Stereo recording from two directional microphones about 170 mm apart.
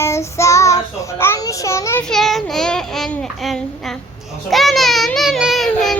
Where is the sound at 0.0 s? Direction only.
15° left (ahead or behind).